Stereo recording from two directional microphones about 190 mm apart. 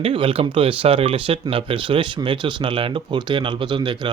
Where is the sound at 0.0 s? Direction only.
30° right (ahead or behind).